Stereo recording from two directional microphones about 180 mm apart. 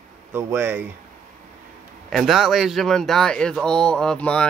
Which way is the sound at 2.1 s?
Centre (ahead or behind).